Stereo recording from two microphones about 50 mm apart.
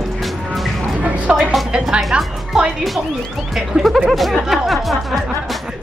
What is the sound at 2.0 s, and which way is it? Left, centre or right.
A woman's voice, centre.